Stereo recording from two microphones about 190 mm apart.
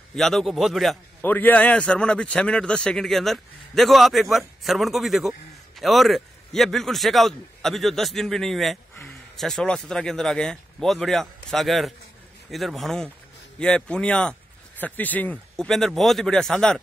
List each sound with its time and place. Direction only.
0.1 s a man's voice: centre (ahead or behind)
1.2 s a man's voice: 10° left (ahead or behind)